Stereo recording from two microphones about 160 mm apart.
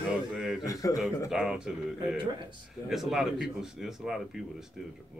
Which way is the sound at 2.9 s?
Centre (ahead or behind).